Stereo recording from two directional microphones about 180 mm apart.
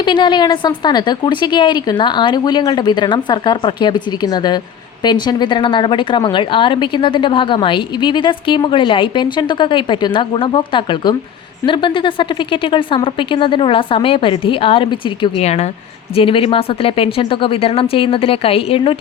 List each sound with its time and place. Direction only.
0.0 s a woman's voice: 25° left (ahead or behind)